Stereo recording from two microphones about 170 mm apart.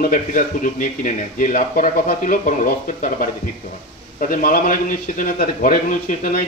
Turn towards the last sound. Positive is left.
turn(degrees=55)  # may be behind; listen again after turning